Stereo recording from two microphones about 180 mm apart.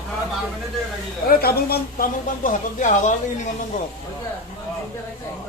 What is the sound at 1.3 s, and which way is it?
Speech, 60° left (ahead or behind).